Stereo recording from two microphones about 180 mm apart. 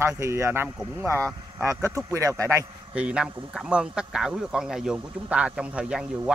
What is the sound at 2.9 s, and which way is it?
Speech, 5° right (ahead or behind).